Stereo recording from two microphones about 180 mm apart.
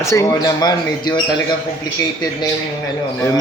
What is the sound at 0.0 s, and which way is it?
Speech, 15° left (ahead or behind).